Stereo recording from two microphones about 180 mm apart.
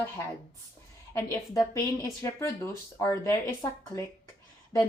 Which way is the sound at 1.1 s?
15° left (ahead or behind).